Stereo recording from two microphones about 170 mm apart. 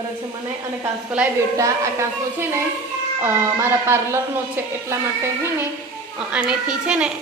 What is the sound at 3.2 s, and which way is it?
Child singing, 15° right (ahead or behind).